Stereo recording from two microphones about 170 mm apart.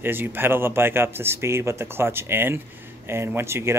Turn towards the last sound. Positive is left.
turn(degrees=-15)  # may be behind; listen again after turning